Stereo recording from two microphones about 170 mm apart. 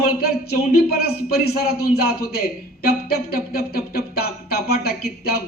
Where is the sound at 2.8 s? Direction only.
65° left (ahead or behind).